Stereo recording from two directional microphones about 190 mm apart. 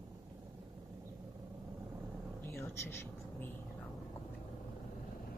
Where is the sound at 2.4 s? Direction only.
15° left (ahead or behind).